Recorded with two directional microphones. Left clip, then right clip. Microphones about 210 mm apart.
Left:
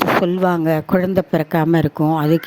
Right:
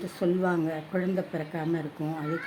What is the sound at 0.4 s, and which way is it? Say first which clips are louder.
Speech: left 12 dB; 45° left (ahead or behind).